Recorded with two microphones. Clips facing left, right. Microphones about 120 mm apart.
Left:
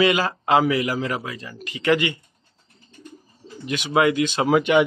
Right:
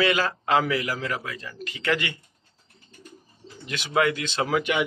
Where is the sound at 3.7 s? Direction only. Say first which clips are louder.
Left 4 dB; 20° left (ahead or behind).